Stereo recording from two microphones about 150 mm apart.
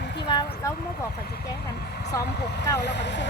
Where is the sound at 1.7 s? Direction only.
90° left.